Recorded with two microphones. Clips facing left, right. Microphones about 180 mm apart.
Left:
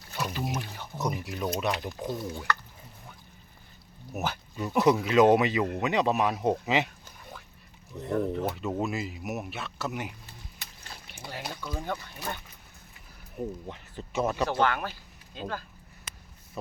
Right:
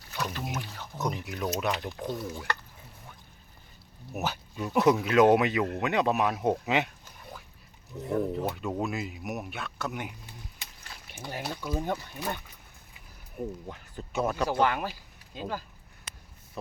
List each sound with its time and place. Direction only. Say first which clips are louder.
0.2 s a sound: left 2 dB; 5° left (ahead or behind)
1.2 s speech: left 1 dB; centre (ahead or behind)
4.1 s speech: even; centre (ahead or behind)
11.3 s speech: right 3 dB; 15° right (ahead or behind)
13.4 s speech: left 1 dB; centre (ahead or behind)